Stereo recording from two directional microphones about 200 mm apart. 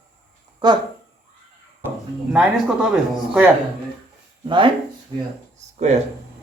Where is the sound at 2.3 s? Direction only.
5° right (ahead or behind).